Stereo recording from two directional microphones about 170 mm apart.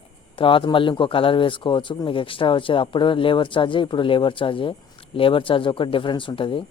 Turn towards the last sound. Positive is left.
turn(degrees=30)  # may be behind; listen again after turning